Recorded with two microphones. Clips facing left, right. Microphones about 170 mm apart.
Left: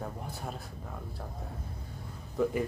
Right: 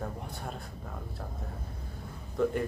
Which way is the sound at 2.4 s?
5° left (ahead or behind).